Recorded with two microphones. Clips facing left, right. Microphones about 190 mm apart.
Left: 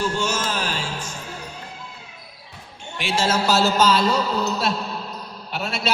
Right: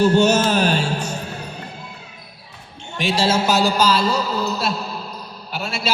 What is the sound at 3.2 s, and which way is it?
A man's voice, 25° right (ahead or behind).